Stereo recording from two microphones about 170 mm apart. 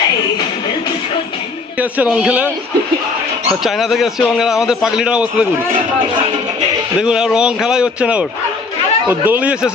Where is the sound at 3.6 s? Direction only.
Centre (ahead or behind).